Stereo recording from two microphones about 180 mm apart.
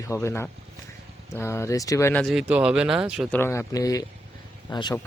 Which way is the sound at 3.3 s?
15° left (ahead or behind).